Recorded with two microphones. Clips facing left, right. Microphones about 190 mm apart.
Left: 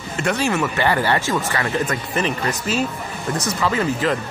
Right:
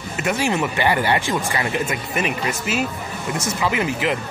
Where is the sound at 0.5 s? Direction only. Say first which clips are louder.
Even; 20° right (ahead or behind).